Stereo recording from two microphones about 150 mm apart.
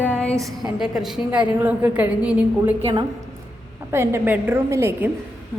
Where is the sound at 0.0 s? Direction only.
10° left (ahead or behind).